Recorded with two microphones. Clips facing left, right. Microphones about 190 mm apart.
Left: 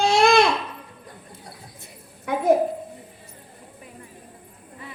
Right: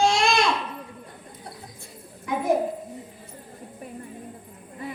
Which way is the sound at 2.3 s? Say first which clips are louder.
Left 2 dB; 65° left (ahead or behind).